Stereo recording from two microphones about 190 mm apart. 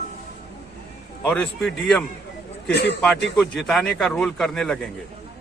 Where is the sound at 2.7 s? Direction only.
60° left (ahead or behind).